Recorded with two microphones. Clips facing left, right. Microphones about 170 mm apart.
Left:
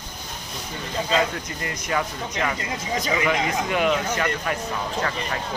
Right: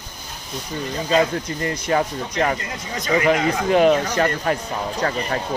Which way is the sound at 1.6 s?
35° right (ahead or behind).